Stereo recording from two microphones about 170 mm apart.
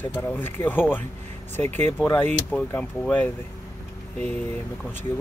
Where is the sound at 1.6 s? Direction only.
40° right (ahead or behind).